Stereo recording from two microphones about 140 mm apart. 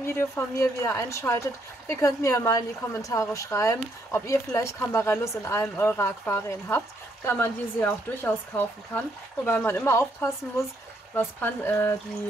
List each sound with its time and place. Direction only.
0.0 s a woman's voice: 15° left (ahead or behind)